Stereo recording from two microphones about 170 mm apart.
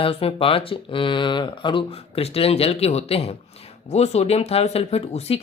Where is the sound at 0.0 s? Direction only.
35° left (ahead or behind).